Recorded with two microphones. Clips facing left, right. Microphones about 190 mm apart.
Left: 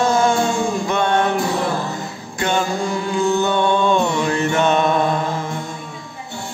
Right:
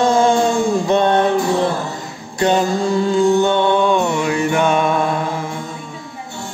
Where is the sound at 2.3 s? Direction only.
35° right (ahead or behind).